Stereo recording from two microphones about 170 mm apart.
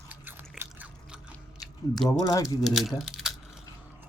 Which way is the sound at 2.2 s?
20° left (ahead or behind).